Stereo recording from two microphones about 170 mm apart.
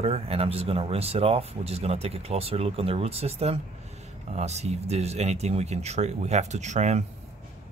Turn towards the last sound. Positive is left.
turn(degrees=-40)  # may be behind; listen again after turning